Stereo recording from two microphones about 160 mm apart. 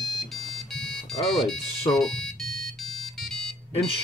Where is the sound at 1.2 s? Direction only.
Centre (ahead or behind).